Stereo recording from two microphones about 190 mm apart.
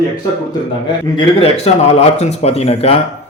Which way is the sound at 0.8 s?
25° left (ahead or behind).